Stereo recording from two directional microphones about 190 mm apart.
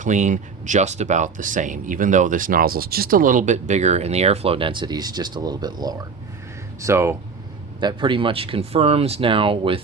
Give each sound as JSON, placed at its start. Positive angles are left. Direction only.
{"t": 0.0, "sound": "speech", "side_deg": -40}
{"t": 7.8, "sound": "speech", "side_deg": -25}